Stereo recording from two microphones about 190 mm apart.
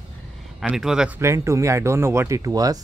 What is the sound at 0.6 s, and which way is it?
Speech, centre (ahead or behind).